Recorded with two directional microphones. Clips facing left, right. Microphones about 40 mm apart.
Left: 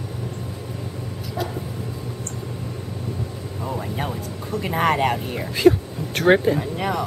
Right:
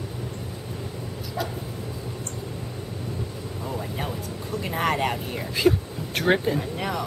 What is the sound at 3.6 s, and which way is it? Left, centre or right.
Vehicle, centre.